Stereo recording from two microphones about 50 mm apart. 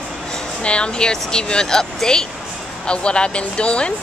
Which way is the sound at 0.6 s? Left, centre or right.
Left.